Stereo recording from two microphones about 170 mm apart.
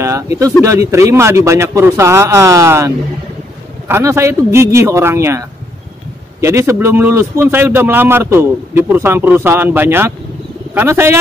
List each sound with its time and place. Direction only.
0.0 s a man's voice: 20° right (ahead or behind)